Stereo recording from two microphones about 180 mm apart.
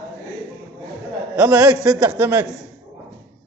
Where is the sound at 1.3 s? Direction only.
5° right (ahead or behind).